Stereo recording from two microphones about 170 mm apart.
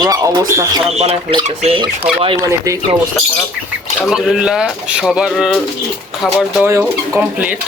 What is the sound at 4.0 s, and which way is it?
Speech, centre (ahead or behind).